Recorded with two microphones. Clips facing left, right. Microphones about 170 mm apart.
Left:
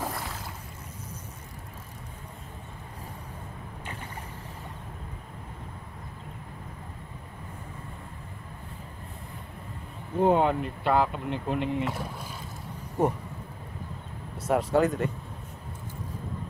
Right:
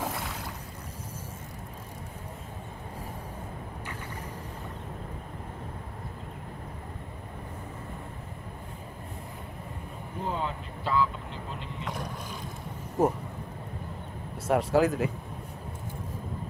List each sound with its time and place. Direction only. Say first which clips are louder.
0.0 s boat: even; centre (ahead or behind)
10.2 s speech: left 11 dB; 65° left (ahead or behind)
11.8 s speech: left 4 dB; 5° left (ahead or behind)
14.5 s speech: even; centre (ahead or behind)